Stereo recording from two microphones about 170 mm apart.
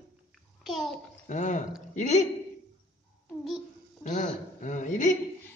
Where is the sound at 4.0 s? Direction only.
45° left (ahead or behind).